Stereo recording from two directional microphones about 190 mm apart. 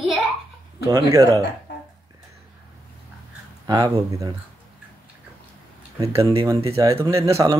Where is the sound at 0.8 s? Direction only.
15° right (ahead or behind).